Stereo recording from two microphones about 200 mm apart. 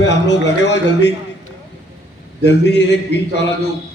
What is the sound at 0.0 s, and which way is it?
Speech, 60° left (ahead or behind).